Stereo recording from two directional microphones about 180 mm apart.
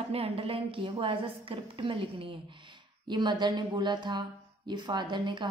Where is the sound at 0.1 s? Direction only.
30° right (ahead or behind).